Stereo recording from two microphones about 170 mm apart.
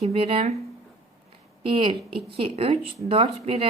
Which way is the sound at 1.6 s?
30° right (ahead or behind).